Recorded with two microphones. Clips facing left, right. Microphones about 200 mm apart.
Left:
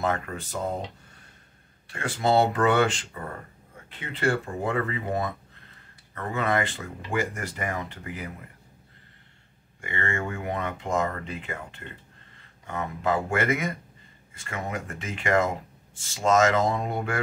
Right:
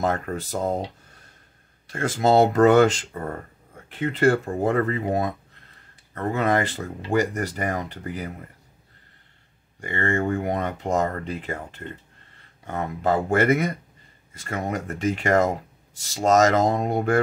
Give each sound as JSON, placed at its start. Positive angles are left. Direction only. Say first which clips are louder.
{"t": 0.0, "sound": "speech", "louder": "right 3 dB", "side_deg": -40}
{"t": 1.9, "sound": "speech", "louder": "right 4 dB", "side_deg": -40}
{"t": 9.8, "sound": "speech", "louder": "right 6 dB", "side_deg": -35}